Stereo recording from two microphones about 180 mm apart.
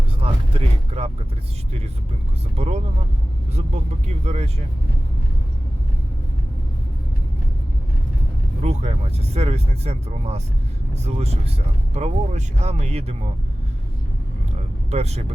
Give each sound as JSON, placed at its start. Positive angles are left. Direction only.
{"t": 0.2, "sound": "a sound", "side_deg": -35}
{"t": 2.6, "sound": "speech", "side_deg": -35}
{"t": 4.0, "sound": "speech", "side_deg": -35}
{"t": 8.6, "sound": "speech", "side_deg": -35}
{"t": 14.8, "sound": "speech", "side_deg": -35}